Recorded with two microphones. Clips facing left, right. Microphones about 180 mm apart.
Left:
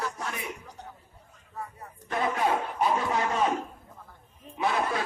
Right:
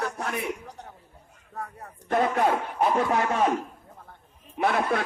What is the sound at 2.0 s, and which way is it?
Music, 50° right (ahead or behind).